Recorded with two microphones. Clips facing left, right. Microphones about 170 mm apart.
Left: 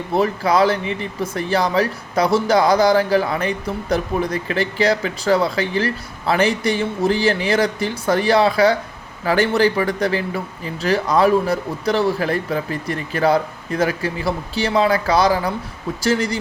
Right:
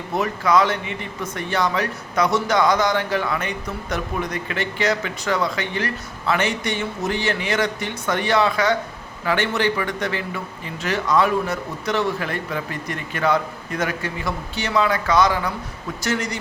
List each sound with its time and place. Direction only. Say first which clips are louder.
0.1 s speech: left 2 dB; 30° left (ahead or behind)